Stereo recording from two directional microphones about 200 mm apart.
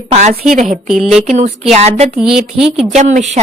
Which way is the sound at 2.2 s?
5° right (ahead or behind).